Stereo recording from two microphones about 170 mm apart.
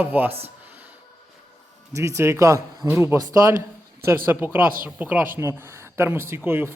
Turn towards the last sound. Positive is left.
turn(degrees=-10)  # may be behind; listen again after turning